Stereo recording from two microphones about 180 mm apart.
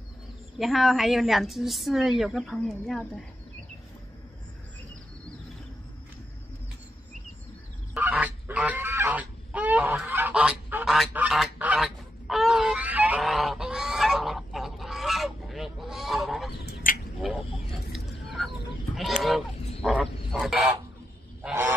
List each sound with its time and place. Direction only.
0.6 s a woman's voice: centre (ahead or behind)
7.9 s goose: 5° right (ahead or behind)
16.6 s bird: 55° left (ahead or behind)
17.2 s a sound: 5° right (ahead or behind)
19.2 s a sound: centre (ahead or behind)
21.4 s goose: 10° right (ahead or behind)